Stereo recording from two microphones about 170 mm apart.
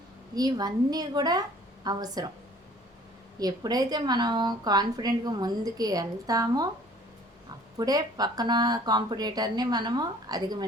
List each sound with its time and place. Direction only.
0.3 s a woman's voice: 25° right (ahead or behind)
3.4 s a woman's voice: 25° right (ahead or behind)
7.8 s a woman's voice: 25° right (ahead or behind)